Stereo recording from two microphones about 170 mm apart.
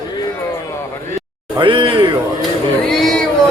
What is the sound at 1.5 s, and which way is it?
Speech, 30° right (ahead or behind).